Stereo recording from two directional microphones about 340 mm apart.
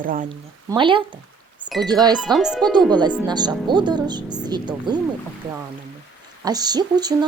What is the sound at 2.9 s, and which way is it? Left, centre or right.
Speech, centre.